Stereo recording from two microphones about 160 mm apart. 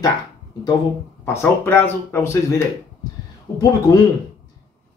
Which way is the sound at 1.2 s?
15° left (ahead or behind).